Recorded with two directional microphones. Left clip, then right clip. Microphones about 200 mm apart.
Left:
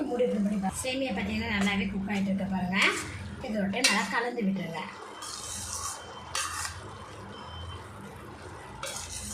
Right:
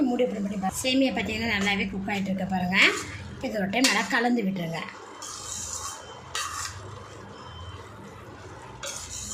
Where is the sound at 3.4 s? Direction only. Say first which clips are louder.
Right 3 dB; 45° right (ahead or behind).